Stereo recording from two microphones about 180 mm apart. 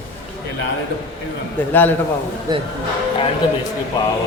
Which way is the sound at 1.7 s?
10° left (ahead or behind).